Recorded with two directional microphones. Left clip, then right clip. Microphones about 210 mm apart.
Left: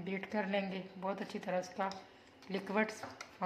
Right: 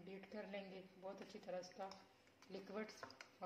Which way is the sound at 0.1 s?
20° left (ahead or behind).